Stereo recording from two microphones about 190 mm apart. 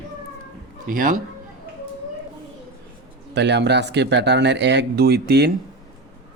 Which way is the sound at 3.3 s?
65° right (ahead or behind).